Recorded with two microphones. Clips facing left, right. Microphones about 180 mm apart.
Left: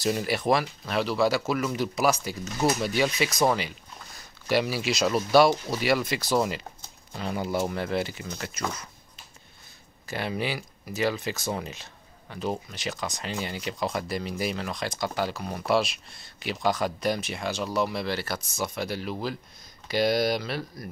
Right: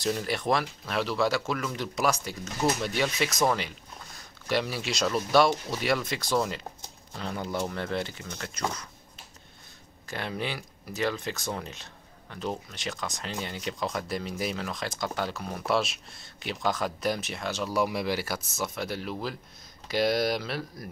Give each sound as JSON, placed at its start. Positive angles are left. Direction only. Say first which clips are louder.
{"t": 0.0, "sound": "speech", "louder": "left 3 dB", "side_deg": 5}
{"t": 10.0, "sound": "speech", "louder": "left 3 dB", "side_deg": 5}
{"t": 17.8, "sound": "speech", "louder": "even", "side_deg": -10}